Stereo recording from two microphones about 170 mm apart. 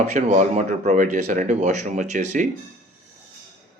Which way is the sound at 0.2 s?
45° right (ahead or behind).